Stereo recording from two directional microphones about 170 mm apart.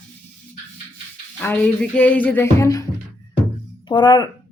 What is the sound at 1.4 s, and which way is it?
Speech, 10° left (ahead or behind).